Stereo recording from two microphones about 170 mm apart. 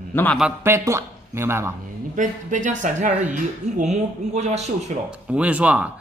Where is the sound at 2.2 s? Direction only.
50° right (ahead or behind).